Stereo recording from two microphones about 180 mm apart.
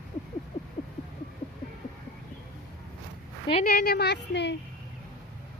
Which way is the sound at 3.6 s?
55° left (ahead or behind).